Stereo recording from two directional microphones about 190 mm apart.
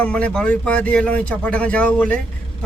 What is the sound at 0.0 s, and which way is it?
A man's voice, 5° left (ahead or behind).